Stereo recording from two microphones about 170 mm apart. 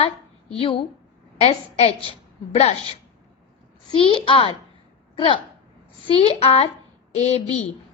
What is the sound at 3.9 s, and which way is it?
A woman's voice, 35° left (ahead or behind).